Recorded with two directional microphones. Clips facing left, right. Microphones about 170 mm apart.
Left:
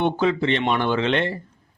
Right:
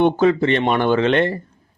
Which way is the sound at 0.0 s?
50° right (ahead or behind).